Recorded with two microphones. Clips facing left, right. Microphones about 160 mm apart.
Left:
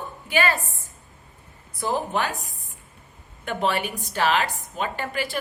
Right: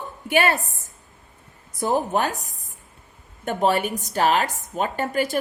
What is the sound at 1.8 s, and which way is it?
A woman's voice, 45° right (ahead or behind).